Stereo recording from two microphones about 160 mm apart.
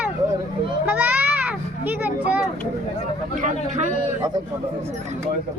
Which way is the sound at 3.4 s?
50° right (ahead or behind).